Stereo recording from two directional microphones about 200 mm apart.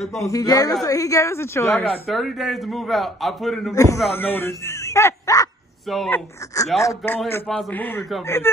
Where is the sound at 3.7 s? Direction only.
15° left (ahead or behind).